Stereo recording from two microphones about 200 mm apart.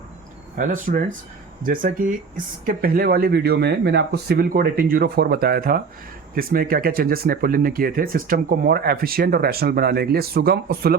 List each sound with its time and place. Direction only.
0.5 s speech: 45° right (ahead or behind)